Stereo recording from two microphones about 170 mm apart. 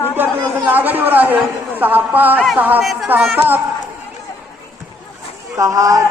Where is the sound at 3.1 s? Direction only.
10° right (ahead or behind).